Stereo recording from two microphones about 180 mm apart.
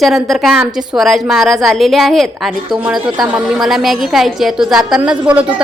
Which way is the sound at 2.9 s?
25° right (ahead or behind).